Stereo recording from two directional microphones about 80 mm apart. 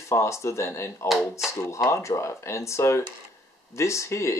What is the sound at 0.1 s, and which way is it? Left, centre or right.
Speech, left.